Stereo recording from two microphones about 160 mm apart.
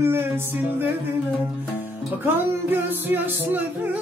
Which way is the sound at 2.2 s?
15° right (ahead or behind).